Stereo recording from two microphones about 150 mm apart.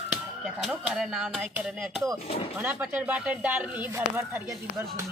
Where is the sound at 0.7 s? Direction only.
Centre (ahead or behind); by 5.0 s 20° right (ahead or behind).